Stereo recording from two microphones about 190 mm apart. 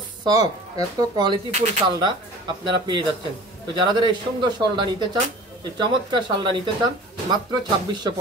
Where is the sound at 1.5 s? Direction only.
35° right (ahead or behind).